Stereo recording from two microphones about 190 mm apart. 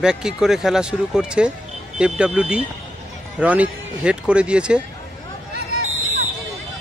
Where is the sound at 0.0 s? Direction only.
5° right (ahead or behind).